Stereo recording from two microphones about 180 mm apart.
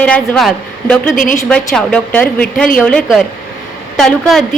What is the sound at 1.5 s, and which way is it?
A woman's voice, 5° left (ahead or behind).